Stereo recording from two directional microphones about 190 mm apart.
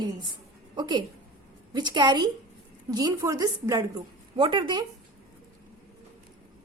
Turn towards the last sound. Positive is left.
turn(degrees=-25)  # may be behind; listen again after turning